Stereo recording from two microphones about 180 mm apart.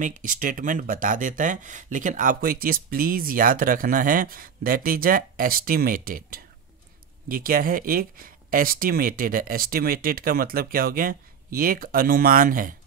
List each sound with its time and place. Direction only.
0.0 s speech: 50° right (ahead or behind)